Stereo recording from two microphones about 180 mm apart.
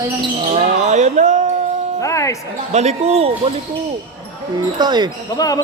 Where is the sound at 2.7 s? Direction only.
40° right (ahead or behind).